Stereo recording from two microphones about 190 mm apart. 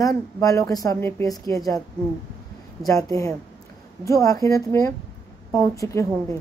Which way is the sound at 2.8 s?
15° left (ahead or behind).